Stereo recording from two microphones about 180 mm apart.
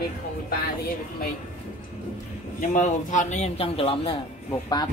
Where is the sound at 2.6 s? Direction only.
45° left (ahead or behind).